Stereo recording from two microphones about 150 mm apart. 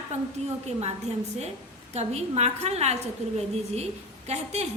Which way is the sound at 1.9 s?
45° right (ahead or behind).